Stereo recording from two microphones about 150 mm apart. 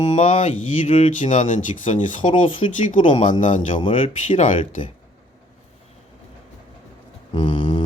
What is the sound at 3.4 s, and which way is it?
Speech, 55° left (ahead or behind).